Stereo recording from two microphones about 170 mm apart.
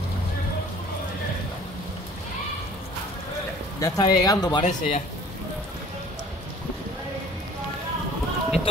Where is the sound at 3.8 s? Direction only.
20° left (ahead or behind).